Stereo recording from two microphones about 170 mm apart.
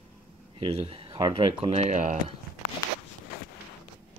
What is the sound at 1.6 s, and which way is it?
Speech, 40° right (ahead or behind).